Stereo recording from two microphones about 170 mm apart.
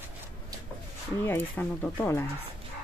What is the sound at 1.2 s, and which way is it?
Speech, 10° left (ahead or behind).